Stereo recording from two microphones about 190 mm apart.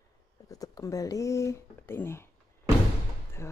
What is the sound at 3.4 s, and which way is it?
Speech, 15° left (ahead or behind).